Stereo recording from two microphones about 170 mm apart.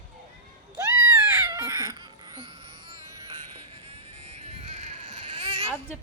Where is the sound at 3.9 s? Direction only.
40° right (ahead or behind).